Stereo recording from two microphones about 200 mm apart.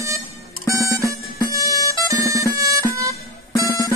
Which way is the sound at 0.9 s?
15° right (ahead or behind).